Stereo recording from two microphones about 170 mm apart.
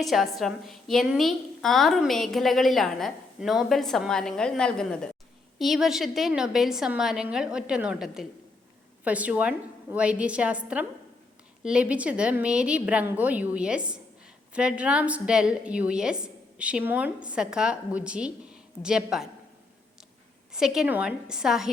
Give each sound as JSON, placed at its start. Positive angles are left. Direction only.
{"t": 0.0, "sound": "a woman's voice", "side_deg": 0}
{"t": 20.5, "sound": "a woman's voice", "side_deg": -5}